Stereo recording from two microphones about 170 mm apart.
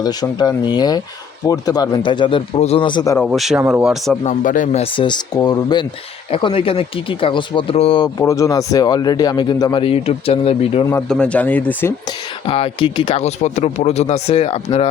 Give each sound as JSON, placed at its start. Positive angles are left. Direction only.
{"t": 0.0, "sound": "speech", "side_deg": 25}
{"t": 3.2, "sound": "speech", "side_deg": 0}
{"t": 4.2, "sound": "speech", "side_deg": 45}
{"t": 8.2, "sound": "speech", "side_deg": 20}
{"t": 11.1, "sound": "speech", "side_deg": 5}
{"t": 12.5, "sound": "speech", "side_deg": 30}